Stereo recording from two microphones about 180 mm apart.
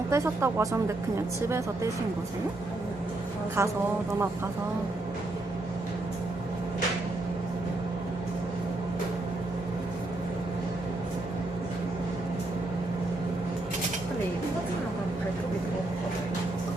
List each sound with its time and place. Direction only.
0.1 s speech: 15° right (ahead or behind)
3.6 s speech: 15° right (ahead or behind)